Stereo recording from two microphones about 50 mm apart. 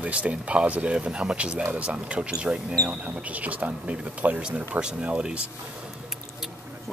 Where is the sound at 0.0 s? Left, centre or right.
Right.